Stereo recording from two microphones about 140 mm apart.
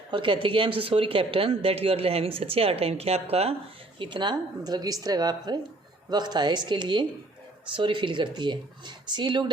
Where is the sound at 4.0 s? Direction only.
35° right (ahead or behind).